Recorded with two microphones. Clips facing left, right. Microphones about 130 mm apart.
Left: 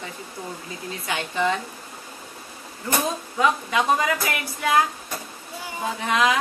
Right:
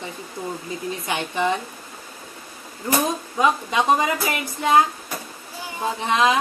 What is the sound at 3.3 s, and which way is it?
A woman's voice, 20° right (ahead or behind).